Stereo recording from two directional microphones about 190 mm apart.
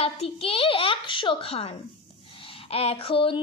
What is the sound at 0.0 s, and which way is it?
A child's voice, 30° left (ahead or behind).